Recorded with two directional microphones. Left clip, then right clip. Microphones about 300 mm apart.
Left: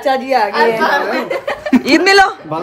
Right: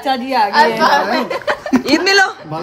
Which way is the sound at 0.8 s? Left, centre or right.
Right.